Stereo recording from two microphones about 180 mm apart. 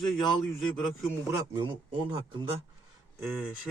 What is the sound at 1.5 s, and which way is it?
Speech, 30° right (ahead or behind).